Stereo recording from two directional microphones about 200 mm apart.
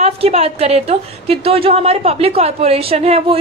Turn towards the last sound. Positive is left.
turn(degrees=-30)  # may be behind; listen again after turning